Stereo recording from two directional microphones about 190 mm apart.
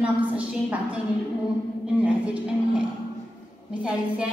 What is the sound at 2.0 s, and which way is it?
Speech, 5° right (ahead or behind).